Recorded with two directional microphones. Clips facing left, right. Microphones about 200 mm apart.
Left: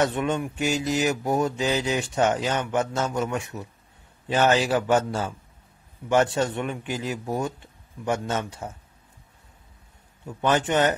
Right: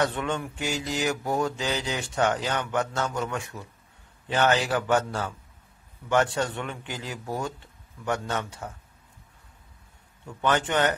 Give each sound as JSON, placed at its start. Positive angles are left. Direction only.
{"t": 0.0, "sound": "mantra", "side_deg": 20}
{"t": 10.2, "sound": "mantra", "side_deg": 25}